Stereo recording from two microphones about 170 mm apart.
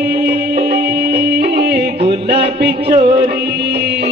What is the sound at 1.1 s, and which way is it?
Music, 70° right (ahead or behind).